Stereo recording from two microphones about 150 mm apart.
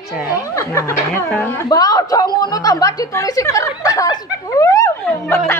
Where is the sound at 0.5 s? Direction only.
20° left (ahead or behind).